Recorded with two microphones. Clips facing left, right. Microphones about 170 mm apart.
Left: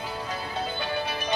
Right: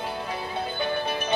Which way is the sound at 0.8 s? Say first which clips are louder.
Right 3 dB; 55° right (ahead or behind).